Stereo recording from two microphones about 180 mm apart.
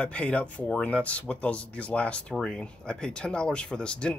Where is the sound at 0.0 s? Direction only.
5° left (ahead or behind).